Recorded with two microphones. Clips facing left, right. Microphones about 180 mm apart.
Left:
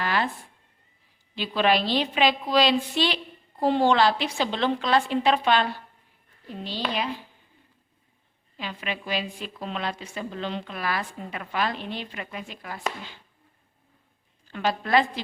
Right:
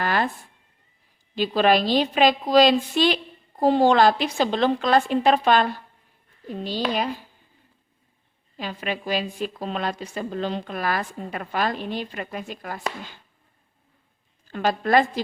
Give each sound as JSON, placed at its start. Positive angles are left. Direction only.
{"t": 0.0, "sound": "a sound", "side_deg": -45}
{"t": 1.4, "sound": "a woman's voice", "side_deg": -45}
{"t": 6.9, "sound": "a woman's voice", "side_deg": -45}
{"t": 8.5, "sound": "a woman's voice", "side_deg": -40}
{"t": 14.5, "sound": "a woman's voice", "side_deg": -45}